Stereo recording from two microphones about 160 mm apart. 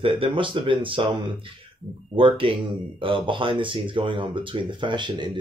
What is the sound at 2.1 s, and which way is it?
Speech, 35° right (ahead or behind).